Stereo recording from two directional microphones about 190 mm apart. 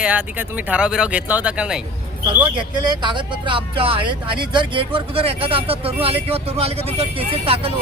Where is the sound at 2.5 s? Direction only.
25° right (ahead or behind).